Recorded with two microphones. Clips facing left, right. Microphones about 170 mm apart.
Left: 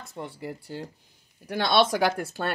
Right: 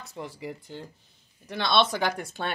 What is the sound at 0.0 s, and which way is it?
Speech, centre (ahead or behind).